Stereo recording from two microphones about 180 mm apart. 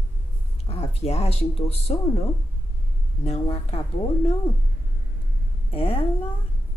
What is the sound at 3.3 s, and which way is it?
Speech, 35° left (ahead or behind).